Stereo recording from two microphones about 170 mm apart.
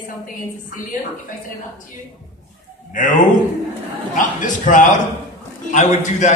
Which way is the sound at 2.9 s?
50° left (ahead or behind).